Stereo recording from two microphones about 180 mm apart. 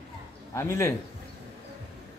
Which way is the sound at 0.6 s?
15° left (ahead or behind).